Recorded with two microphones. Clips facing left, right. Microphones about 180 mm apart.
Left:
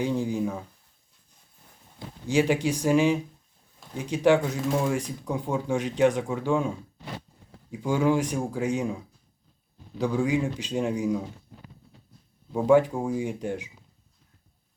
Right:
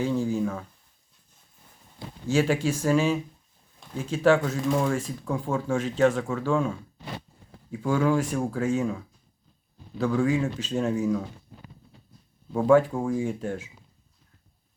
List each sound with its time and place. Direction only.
0.0 s speech: 15° left (ahead or behind)
2.2 s speech: 15° left (ahead or behind)
4.5 s speech: centre (ahead or behind)
4.9 s speech: 15° left (ahead or behind)
12.5 s speech: 15° left (ahead or behind)